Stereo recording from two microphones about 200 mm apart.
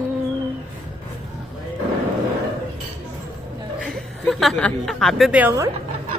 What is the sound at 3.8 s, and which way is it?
A woman's voice, centre (ahead or behind).